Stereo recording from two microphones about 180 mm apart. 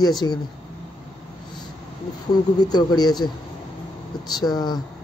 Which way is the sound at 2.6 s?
20° left (ahead or behind).